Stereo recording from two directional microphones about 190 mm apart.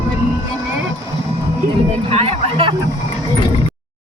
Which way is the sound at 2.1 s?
30° right (ahead or behind).